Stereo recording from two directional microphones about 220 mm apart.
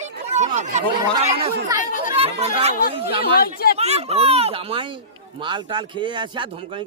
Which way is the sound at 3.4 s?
45° left (ahead or behind).